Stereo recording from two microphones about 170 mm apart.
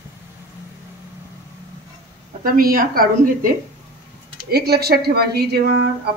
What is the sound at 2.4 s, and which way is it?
Speech, 55° right (ahead or behind).